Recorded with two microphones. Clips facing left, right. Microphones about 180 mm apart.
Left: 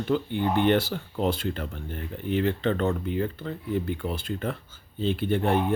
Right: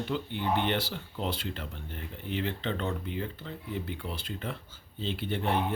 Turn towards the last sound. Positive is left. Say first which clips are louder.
# left 6 dB
turn(degrees=50)  # may be behind; listen again after turning